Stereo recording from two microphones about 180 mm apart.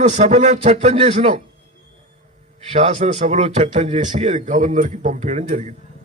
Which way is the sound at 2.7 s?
40° right (ahead or behind).